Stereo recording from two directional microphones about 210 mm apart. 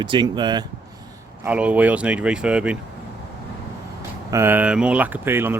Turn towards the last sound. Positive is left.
turn(degrees=-10)  # may be behind; listen again after turning